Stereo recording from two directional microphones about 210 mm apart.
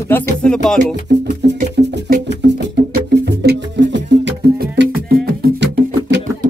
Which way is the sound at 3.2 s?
55° right (ahead or behind).